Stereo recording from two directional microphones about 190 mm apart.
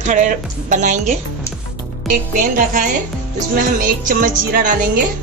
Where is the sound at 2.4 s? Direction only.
45° right (ahead or behind).